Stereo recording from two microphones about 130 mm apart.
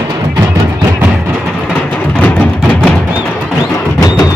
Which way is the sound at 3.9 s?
25° left (ahead or behind).